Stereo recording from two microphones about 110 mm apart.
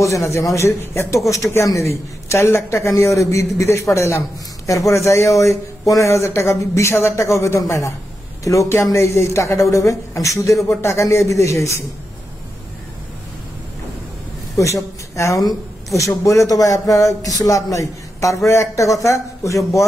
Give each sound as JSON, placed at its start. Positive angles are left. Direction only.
{"t": 0.3, "sound": "speech", "side_deg": 25}
{"t": 15.1, "sound": "speech", "side_deg": 30}